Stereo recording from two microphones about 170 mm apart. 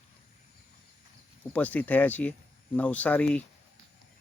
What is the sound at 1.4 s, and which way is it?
Speech, 10° left (ahead or behind).